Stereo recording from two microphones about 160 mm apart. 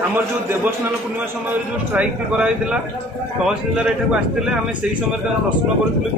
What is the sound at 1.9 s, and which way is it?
A man's voice, 10° right (ahead or behind).